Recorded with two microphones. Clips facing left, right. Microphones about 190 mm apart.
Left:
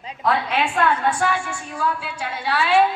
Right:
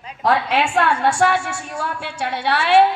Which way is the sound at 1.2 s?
70° right (ahead or behind).